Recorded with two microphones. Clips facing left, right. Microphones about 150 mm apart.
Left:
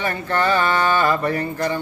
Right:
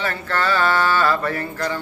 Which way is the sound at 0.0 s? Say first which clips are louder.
Left 2 dB; 15° left (ahead or behind).